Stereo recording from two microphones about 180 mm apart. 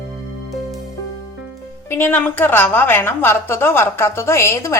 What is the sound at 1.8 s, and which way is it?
A woman's voice, 10° left (ahead or behind).